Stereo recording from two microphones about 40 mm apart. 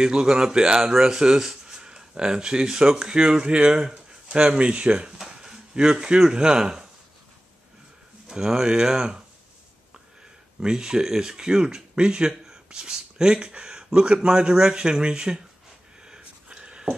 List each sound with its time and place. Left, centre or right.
0.0 s speech: centre
1.8 s speech: right
5.2 s speech: centre
8.3 s speech: centre
10.6 s speech: centre
16.1 s a sound: right